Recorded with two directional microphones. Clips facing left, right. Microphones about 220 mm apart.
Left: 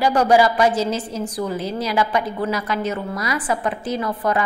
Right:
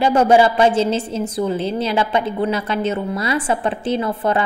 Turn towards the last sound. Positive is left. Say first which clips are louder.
# right 3 dB
turn(degrees=-25)  # may be behind; listen again after turning